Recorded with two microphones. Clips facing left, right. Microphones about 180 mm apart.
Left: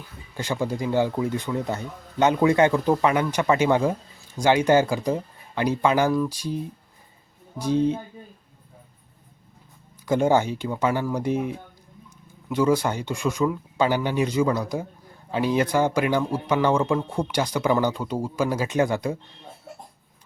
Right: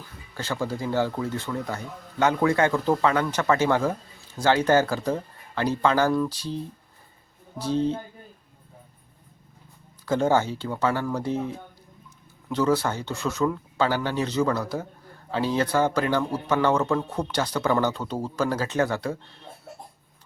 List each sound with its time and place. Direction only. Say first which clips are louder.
0.3 s speech: left 2 dB; 15° left (ahead or behind)
10.1 s speech: left 2 dB; 15° left (ahead or behind)